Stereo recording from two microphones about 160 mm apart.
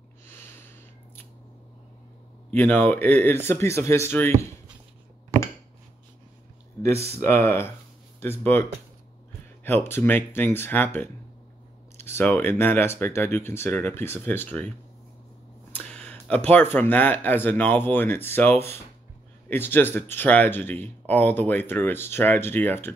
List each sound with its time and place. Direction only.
2.5 s speech: 10° left (ahead or behind)
6.8 s speech: 15° left (ahead or behind)
15.8 s a sound: 10° left (ahead or behind)
16.7 s speech: 10° left (ahead or behind)